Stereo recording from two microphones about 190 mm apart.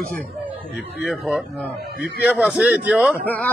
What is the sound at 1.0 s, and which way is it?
A man's voice, centre (ahead or behind).